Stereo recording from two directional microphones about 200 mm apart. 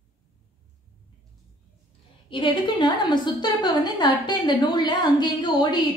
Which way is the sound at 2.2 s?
25° left (ahead or behind).